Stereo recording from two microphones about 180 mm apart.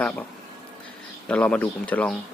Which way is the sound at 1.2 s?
5° left (ahead or behind).